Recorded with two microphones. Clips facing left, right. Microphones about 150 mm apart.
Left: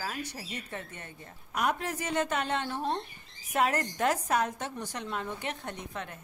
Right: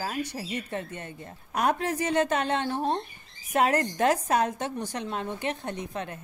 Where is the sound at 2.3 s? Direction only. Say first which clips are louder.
Right 5 dB; 25° right (ahead or behind).